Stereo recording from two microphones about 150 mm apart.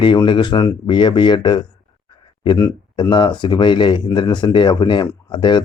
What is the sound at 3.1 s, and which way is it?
Speech, 30° left (ahead or behind).